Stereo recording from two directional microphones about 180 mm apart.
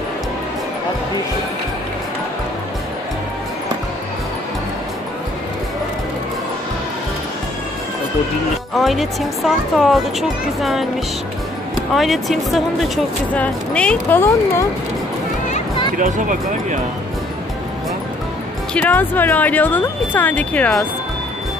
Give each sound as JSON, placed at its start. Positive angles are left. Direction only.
{"t": 8.7, "sound": "speech", "side_deg": 0}
{"t": 11.9, "sound": "speech", "side_deg": 0}
{"t": 16.0, "sound": "speech", "side_deg": -45}
{"t": 18.7, "sound": "speech", "side_deg": 10}